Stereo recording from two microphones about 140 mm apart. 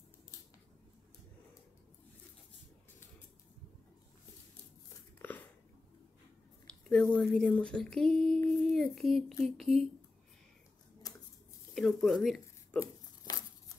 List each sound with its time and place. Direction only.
5.2 s biting: 15° left (ahead or behind)
6.7 s a sound: 5° left (ahead or behind)
11.7 s speech: 5° left (ahead or behind)
12.8 s tearing: 25° left (ahead or behind)